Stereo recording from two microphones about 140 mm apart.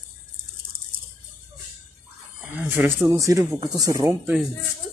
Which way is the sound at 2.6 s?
15° right (ahead or behind).